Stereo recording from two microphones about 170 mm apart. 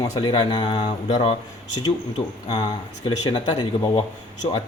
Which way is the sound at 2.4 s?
25° left (ahead or behind).